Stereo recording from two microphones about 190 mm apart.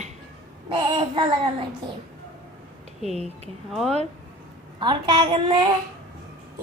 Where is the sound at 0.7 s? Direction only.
25° right (ahead or behind).